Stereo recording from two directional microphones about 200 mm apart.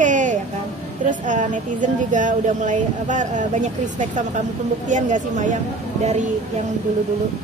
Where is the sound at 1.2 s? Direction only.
40° right (ahead or behind).